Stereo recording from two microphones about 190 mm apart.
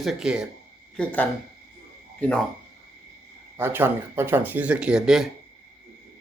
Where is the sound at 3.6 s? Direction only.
10° right (ahead or behind).